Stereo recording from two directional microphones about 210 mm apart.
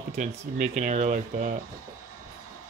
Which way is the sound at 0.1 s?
35° right (ahead or behind).